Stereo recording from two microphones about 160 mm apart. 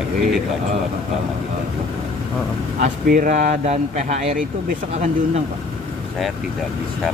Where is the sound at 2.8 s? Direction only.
55° right (ahead or behind).